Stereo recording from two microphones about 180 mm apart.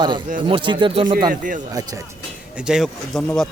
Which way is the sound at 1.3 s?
50° right (ahead or behind).